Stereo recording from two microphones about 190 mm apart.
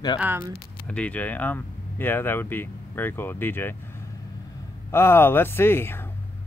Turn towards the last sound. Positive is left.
turn(degrees=10)  # may be behind; listen again after turning